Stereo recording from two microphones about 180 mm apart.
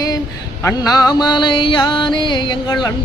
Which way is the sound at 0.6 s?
20° left (ahead or behind).